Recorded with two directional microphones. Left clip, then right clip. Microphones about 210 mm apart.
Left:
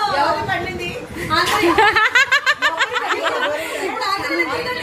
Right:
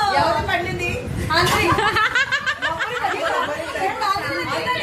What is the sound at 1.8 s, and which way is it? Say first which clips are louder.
Snicker: left 5 dB; 35° left (ahead or behind).